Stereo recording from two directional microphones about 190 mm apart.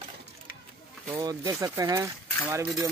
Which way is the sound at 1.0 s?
20° right (ahead or behind).